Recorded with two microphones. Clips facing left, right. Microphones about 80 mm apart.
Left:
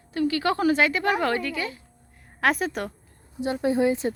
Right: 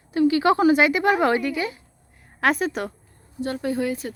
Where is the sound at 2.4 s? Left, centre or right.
Centre.